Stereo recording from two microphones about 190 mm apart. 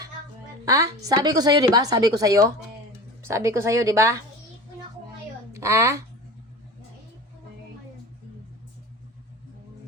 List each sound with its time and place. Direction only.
0.6 s a woman's voice: 15° right (ahead or behind)
5.5 s a child's voice: 15° right (ahead or behind)